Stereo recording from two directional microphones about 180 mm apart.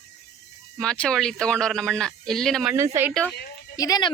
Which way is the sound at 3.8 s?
20° left (ahead or behind).